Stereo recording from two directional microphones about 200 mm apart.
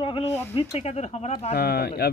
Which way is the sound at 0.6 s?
30° left (ahead or behind).